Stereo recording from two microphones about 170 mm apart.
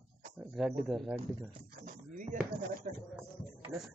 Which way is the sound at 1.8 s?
50° right (ahead or behind).